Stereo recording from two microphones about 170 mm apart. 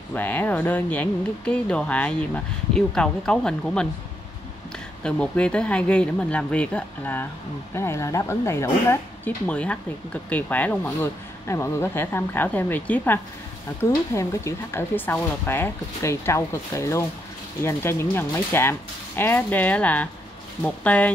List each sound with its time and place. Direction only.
0.1 s speech: 10° left (ahead or behind)